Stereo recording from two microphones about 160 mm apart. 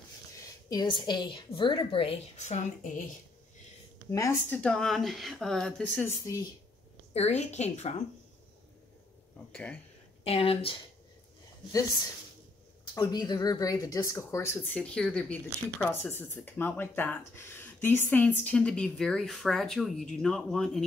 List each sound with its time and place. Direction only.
0.7 s a woman's voice: 25° left (ahead or behind); by 2.9 s 45° left (ahead or behind)
4.1 s speech: 15° left (ahead or behind)
6.0 s speech: 20° left (ahead or behind)
7.2 s a woman's voice: 45° left (ahead or behind)
9.5 s speech: 10° left (ahead or behind)
10.2 s a woman's voice: 40° left (ahead or behind)
12.9 s speech: 25° left (ahead or behind); by 20.8 s centre (ahead or behind)